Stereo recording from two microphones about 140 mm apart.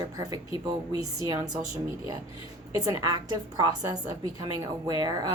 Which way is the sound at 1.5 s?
60° right (ahead or behind).